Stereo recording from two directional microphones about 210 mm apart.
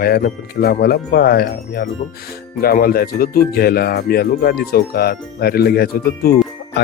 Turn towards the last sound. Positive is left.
turn(degrees=45)  # may be behind; listen again after turning